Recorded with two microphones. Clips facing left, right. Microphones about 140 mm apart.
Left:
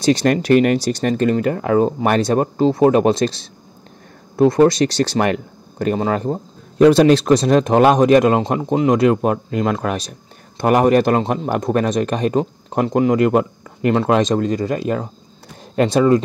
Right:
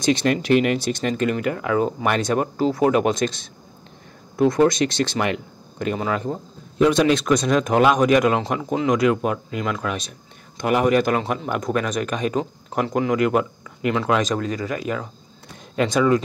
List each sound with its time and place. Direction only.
0.0 s speech: 40° left (ahead or behind)
12.6 s speech: 25° left (ahead or behind); by 14.0 s 45° left (ahead or behind)
14.0 s speech: 30° left (ahead or behind)